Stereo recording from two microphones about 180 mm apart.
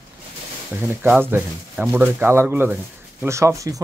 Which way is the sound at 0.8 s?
10° right (ahead or behind).